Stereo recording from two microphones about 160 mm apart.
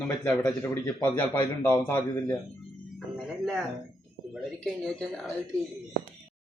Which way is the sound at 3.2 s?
Centre (ahead or behind).